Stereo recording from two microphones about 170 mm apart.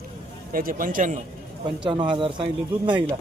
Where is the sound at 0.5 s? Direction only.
55° right (ahead or behind).